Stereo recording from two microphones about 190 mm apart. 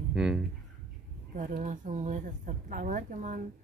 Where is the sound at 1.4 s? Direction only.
40° right (ahead or behind).